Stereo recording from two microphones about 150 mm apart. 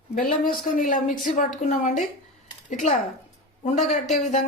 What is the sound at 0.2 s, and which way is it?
A woman's voice, 65° left (ahead or behind).